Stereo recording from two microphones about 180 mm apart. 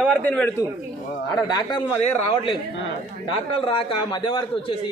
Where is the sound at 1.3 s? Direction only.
25° left (ahead or behind).